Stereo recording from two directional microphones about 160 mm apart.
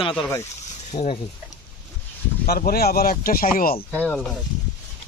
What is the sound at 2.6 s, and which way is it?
Speech, 75° left (ahead or behind).